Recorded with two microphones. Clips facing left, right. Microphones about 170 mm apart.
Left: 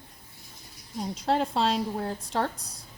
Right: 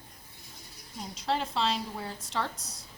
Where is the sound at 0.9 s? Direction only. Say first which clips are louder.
Left 5 dB; 45° left (ahead or behind).